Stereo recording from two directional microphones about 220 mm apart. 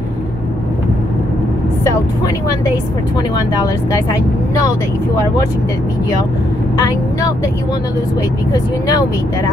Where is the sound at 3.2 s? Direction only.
15° left (ahead or behind).